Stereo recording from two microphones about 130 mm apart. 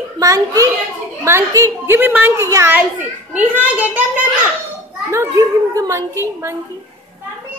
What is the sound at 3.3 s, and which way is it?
Speech, 10° right (ahead or behind).